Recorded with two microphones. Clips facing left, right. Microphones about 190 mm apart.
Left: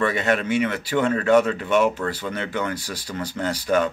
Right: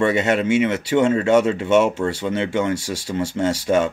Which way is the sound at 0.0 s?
25° right (ahead or behind).